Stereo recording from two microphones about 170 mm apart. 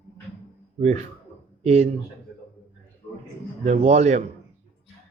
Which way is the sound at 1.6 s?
40° right (ahead or behind).